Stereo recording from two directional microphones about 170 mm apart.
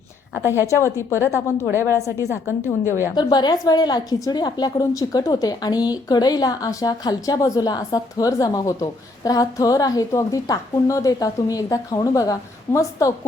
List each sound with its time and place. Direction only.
0.4 s a woman's voice: 15° right (ahead or behind)
1.1 s a woman's voice: 15° left (ahead or behind)